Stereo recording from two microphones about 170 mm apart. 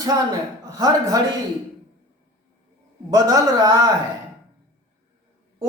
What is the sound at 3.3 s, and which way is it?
Speech, 20° right (ahead or behind).